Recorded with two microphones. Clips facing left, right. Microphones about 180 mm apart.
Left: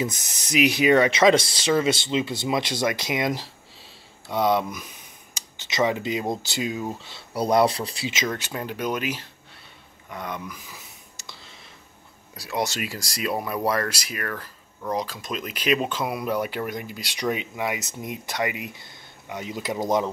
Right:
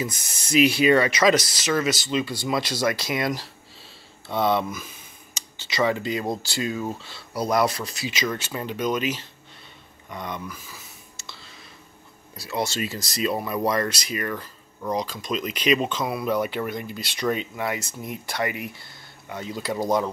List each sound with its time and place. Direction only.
0.1 s speech: 20° left (ahead or behind)
7.1 s speech: 25° left (ahead or behind)
8.6 s speech: 10° left (ahead or behind)
10.0 s whispering: 10° left (ahead or behind)
12.4 s speech: 15° left (ahead or behind)